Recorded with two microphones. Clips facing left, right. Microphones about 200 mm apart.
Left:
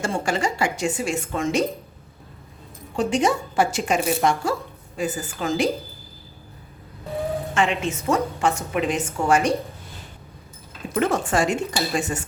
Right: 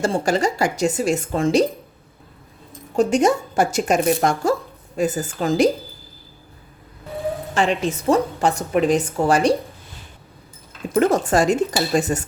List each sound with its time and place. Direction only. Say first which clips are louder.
0.0 s a woman's voice: right 5 dB; 35° right (ahead or behind)
2.9 s a woman's voice: right 4 dB; 45° right (ahead or behind)
7.5 s a woman's voice: right 4 dB; 35° right (ahead or behind)
10.9 s a woman's voice: right 5 dB; 40° right (ahead or behind)